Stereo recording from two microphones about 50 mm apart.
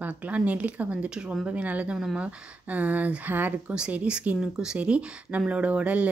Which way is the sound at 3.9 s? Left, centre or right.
Right.